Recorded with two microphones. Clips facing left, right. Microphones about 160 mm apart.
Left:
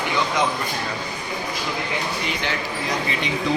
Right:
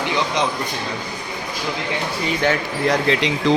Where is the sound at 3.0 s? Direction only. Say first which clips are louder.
Right 6 dB; 90° right.